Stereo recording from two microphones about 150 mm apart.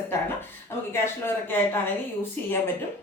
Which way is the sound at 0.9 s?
15° left (ahead or behind).